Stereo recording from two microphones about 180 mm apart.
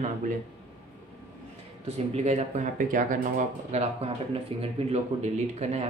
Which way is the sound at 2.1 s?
40° right (ahead or behind).